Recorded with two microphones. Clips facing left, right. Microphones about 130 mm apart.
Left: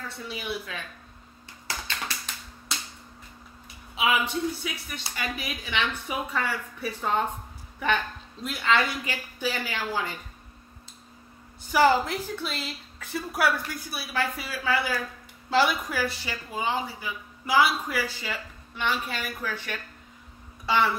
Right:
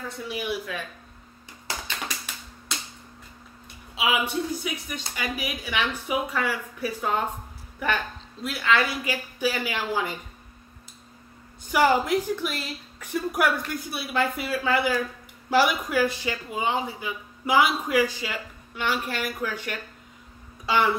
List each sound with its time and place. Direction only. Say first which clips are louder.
0.3 s speech: right 4 dB; 15° right (ahead or behind)
1.7 s a sound: right 1 dB; 15° right (ahead or behind)
4.0 s speech: even; 10° right (ahead or behind)
11.7 s a woman's voice: right 1 dB; 15° right (ahead or behind)